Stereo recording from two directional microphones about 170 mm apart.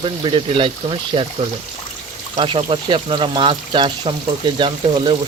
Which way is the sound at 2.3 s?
30° right (ahead or behind).